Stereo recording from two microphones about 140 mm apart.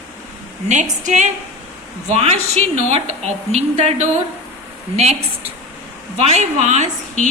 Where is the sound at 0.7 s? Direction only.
60° right (ahead or behind).